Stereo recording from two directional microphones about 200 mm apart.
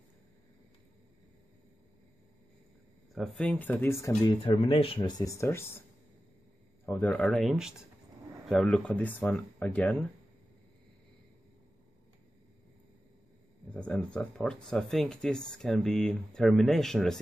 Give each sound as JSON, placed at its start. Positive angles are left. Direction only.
{"t": 3.2, "sound": "speech", "side_deg": 5}
{"t": 4.6, "sound": "speech", "side_deg": 30}
{"t": 6.9, "sound": "speech", "side_deg": 5}
{"t": 13.7, "sound": "speech", "side_deg": 5}